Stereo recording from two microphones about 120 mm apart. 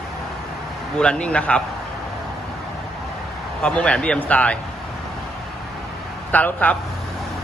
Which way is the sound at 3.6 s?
10° left (ahead or behind).